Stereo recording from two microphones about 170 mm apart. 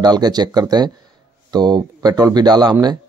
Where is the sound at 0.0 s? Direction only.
25° right (ahead or behind).